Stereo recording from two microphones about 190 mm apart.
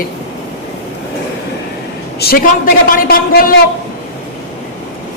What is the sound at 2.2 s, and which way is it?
Speech, 55° left (ahead or behind).